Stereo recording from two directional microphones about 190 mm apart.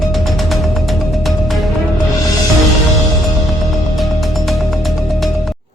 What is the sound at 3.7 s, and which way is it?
Music, centre (ahead or behind).